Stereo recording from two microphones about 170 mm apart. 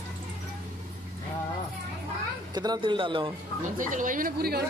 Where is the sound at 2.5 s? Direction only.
25° right (ahead or behind).